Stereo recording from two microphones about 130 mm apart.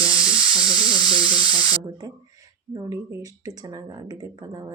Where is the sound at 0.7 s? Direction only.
30° left (ahead or behind).